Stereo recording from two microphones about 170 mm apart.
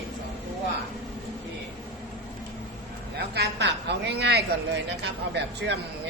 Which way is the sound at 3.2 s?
75° right (ahead or behind).